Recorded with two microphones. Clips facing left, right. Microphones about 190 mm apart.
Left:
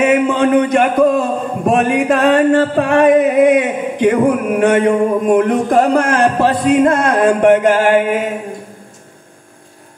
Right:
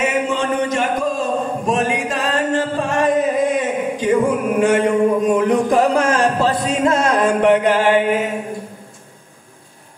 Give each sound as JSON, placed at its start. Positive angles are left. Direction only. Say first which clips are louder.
{"t": 0.0, "sound": "a man's voice", "louder": "left 7 dB", "side_deg": 55}